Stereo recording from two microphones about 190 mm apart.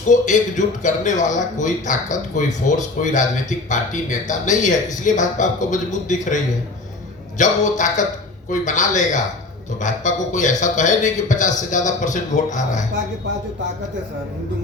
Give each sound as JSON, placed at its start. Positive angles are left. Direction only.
{"t": 0.1, "sound": "a man's voice", "side_deg": 40}